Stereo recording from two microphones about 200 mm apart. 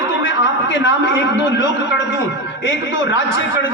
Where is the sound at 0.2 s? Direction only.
65° left (ahead or behind).